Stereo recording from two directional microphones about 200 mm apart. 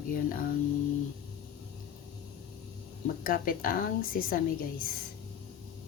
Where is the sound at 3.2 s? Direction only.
45° left (ahead or behind).